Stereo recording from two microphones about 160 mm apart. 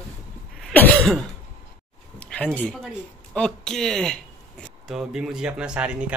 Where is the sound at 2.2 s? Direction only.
10° left (ahead or behind).